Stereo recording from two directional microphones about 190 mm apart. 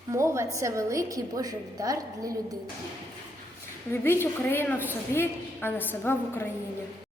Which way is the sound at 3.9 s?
10° left (ahead or behind).